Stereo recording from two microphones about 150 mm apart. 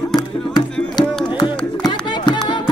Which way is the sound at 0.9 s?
30° left (ahead or behind).